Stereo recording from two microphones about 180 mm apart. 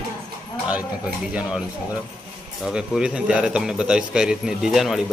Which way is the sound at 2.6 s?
5° right (ahead or behind).